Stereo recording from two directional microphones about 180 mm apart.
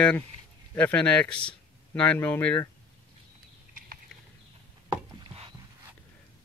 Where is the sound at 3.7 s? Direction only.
55° right (ahead or behind).